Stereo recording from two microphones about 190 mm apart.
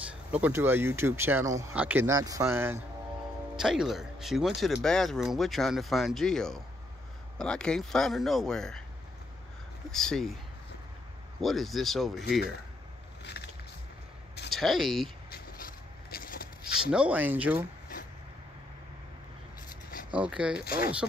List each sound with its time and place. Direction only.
0.1 s speech: 10° right (ahead or behind)
3.5 s speech: 5° right (ahead or behind)
9.8 s speech: centre (ahead or behind)
11.4 s speech: centre (ahead or behind)
13.4 s music: 55° left (ahead or behind)
14.5 s speech: centre (ahead or behind)
15.3 s vehicle: 50° left (ahead or behind)
16.9 s speech: 5° right (ahead or behind)
20.2 s speech: 5° right (ahead or behind)
20.6 s speech: 50° left (ahead or behind)